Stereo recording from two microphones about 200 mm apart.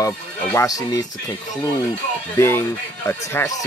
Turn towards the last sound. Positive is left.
turn(degrees=10)  # may be behind; listen again after turning